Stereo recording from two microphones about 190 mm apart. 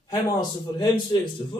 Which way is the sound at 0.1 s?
25° left (ahead or behind).